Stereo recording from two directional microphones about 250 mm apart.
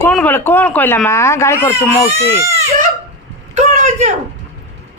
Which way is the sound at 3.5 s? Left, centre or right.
Right.